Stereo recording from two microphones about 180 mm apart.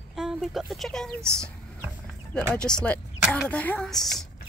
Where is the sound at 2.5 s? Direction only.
5° left (ahead or behind).